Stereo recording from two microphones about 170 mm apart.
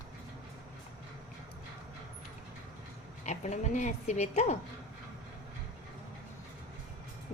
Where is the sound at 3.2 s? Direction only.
45° left (ahead or behind).